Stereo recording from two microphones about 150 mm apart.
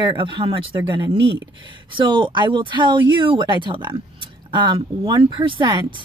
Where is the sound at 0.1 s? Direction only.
35° right (ahead or behind).